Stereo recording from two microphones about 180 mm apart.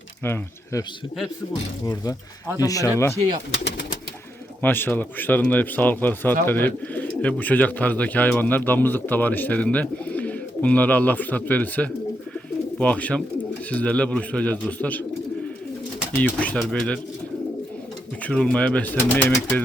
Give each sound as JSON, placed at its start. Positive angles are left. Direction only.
{"t": 0.3, "sound": "speech", "side_deg": 15}
{"t": 3.6, "sound": "speech", "side_deg": 75}
{"t": 4.6, "sound": "speech", "side_deg": 10}
{"t": 16.1, "sound": "speech", "side_deg": 10}
{"t": 18.3, "sound": "speech", "side_deg": 5}